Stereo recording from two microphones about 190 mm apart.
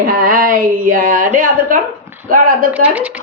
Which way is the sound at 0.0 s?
50° right (ahead or behind).